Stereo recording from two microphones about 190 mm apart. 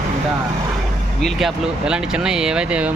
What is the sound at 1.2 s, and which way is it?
Speech, centre (ahead or behind).